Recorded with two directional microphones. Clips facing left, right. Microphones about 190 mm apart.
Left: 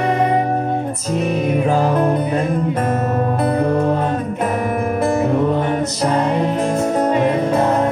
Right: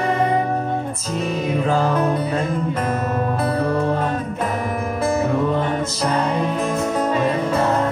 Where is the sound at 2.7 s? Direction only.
35° left (ahead or behind).